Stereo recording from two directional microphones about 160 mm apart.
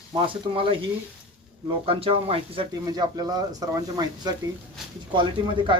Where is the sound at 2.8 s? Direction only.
25° right (ahead or behind).